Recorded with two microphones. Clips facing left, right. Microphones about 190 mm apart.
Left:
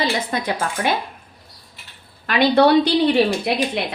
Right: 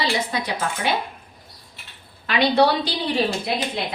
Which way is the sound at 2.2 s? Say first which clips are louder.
Left 3 dB; 60° left (ahead or behind).